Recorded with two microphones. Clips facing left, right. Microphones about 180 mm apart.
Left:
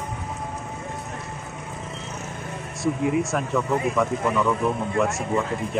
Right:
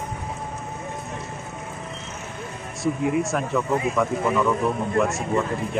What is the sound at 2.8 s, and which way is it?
Speech, centre (ahead or behind).